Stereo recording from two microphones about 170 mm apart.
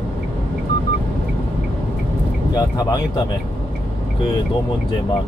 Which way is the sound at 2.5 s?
25° left (ahead or behind).